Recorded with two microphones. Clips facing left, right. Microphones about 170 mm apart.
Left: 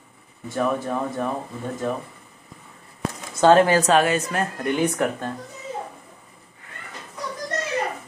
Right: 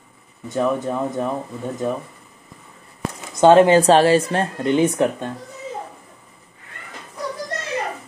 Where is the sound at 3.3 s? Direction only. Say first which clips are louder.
Right 4 dB; 20° right (ahead or behind).